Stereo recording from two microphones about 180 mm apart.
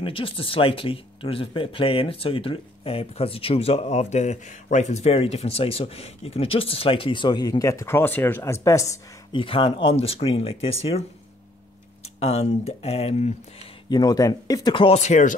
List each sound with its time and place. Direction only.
0.0 s speech: 30° left (ahead or behind)
9.4 s speech: 30° left (ahead or behind)
12.2 s speech: 35° left (ahead or behind)
13.8 s speech: 20° left (ahead or behind); by 15.3 s 40° left (ahead or behind)